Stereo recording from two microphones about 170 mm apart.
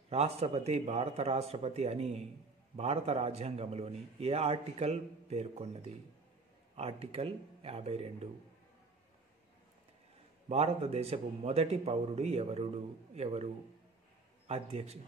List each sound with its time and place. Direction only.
0.1 s a man's voice: 35° right (ahead or behind)
10.5 s a man's voice: 35° right (ahead or behind)
14.5 s a man's voice: 35° right (ahead or behind)